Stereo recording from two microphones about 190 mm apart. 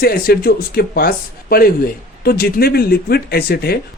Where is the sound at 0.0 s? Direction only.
55° left (ahead or behind).